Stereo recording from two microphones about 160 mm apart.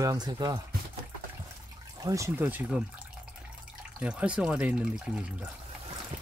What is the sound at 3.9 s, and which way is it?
Speech, 5° right (ahead or behind).